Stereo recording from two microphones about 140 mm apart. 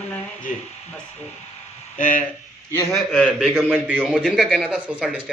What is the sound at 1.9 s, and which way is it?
Speech, 70° left (ahead or behind).